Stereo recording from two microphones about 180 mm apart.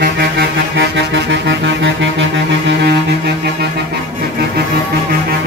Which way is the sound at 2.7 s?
70° right (ahead or behind).